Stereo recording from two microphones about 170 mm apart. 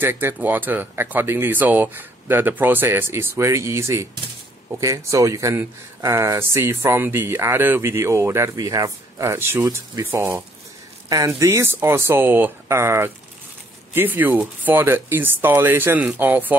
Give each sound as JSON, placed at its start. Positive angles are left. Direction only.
{"t": 0.0, "sound": "speech", "side_deg": -10}